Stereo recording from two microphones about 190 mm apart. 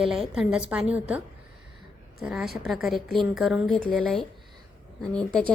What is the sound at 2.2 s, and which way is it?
A woman's voice, 5° right (ahead or behind).